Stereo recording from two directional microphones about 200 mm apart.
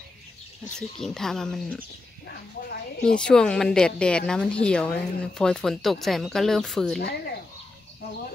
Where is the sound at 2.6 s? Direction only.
50° left (ahead or behind).